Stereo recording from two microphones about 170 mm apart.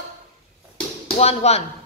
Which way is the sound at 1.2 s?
40° left (ahead or behind).